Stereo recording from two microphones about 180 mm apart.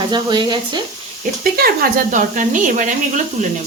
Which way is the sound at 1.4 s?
55° right (ahead or behind).